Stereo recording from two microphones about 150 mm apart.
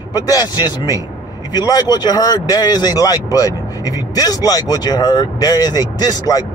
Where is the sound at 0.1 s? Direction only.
25° left (ahead or behind).